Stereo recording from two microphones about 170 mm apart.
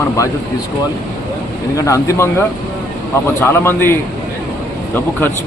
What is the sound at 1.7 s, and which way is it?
Speech, 20° left (ahead or behind).